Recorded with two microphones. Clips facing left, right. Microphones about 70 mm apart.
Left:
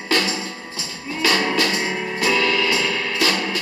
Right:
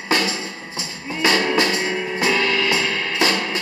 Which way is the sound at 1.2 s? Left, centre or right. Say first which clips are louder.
Right 2 dB; right.